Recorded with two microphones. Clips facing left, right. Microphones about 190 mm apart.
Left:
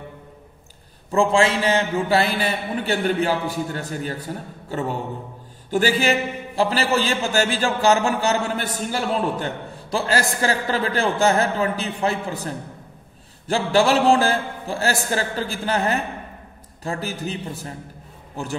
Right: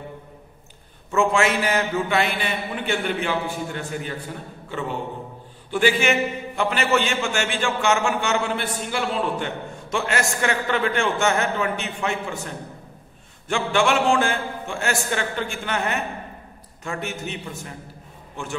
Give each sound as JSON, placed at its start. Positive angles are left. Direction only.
{"t": 1.1, "sound": "a man's voice", "side_deg": 30}